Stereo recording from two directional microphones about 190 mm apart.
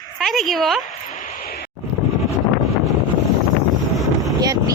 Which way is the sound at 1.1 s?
45° left (ahead or behind).